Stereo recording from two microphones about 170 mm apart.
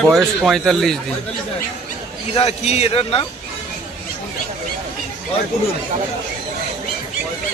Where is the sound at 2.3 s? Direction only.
35° left (ahead or behind).